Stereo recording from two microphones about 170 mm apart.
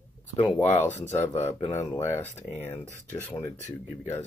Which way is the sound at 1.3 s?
40° left (ahead or behind).